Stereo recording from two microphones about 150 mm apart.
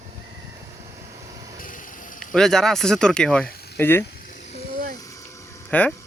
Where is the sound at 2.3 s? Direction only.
5° left (ahead or behind).